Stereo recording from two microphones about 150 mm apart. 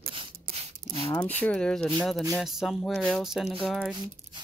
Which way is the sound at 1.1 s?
10° left (ahead or behind).